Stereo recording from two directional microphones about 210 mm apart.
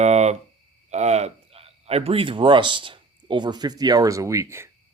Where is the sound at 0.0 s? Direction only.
30° right (ahead or behind).